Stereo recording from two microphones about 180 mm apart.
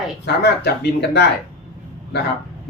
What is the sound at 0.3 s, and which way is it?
Speech, 65° left (ahead or behind).